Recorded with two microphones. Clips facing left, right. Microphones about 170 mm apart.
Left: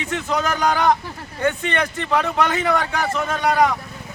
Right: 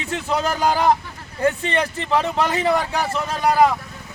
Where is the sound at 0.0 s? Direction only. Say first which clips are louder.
Even; 30° right (ahead or behind).